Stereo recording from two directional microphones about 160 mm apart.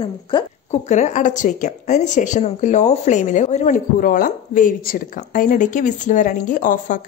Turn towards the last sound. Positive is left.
turn(degrees=55)  # may be behind; listen again after turning